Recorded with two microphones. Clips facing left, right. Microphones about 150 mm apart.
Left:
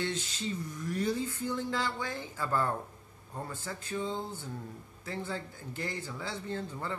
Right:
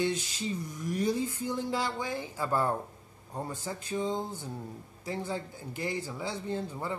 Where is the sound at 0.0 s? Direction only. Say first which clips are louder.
Right 4 dB; 15° right (ahead or behind).